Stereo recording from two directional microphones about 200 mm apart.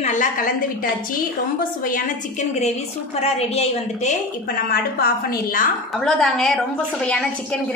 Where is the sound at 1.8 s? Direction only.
40° left (ahead or behind).